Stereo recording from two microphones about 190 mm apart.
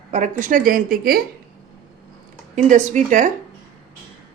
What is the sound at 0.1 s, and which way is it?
Speech, 40° right (ahead or behind).